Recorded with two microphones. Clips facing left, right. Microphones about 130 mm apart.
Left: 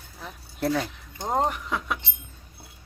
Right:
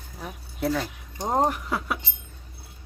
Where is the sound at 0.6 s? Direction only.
Centre (ahead or behind).